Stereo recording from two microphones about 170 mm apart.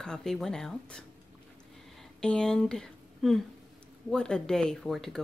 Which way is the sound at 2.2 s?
5° left (ahead or behind).